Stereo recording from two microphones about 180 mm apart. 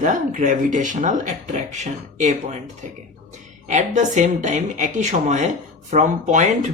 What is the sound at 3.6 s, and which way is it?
Speech, 40° right (ahead or behind).